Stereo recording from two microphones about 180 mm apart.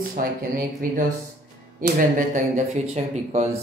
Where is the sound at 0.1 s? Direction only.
50° right (ahead or behind).